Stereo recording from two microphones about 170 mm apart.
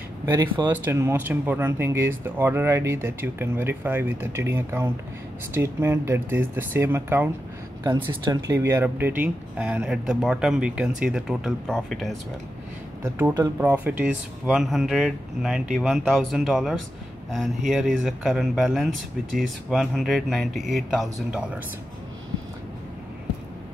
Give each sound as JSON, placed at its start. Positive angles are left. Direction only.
{"t": 0.2, "sound": "speech", "side_deg": -20}
{"t": 13.3, "sound": "speech", "side_deg": -20}
{"t": 13.7, "sound": "speech", "side_deg": -10}